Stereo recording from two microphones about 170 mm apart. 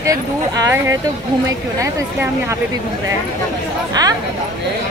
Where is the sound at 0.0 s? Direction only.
20° right (ahead or behind).